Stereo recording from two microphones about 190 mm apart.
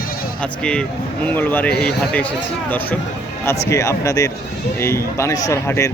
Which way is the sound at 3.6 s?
15° left (ahead or behind).